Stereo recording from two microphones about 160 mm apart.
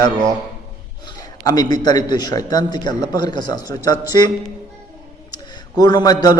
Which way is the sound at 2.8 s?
25° left (ahead or behind).